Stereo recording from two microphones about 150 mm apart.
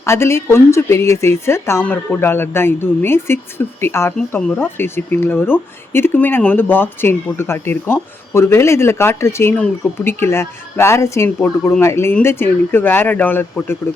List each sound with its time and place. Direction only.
0.0 s a woman's voice: 20° left (ahead or behind)